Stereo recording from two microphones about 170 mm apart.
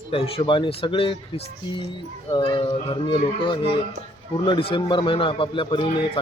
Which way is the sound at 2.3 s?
30° left (ahead or behind).